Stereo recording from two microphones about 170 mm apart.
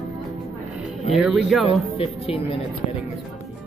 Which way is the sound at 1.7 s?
35° left (ahead or behind).